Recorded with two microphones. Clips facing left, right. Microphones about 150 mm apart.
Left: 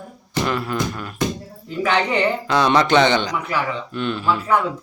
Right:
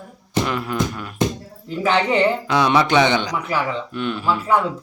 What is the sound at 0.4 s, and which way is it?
Speech, 15° right (ahead or behind).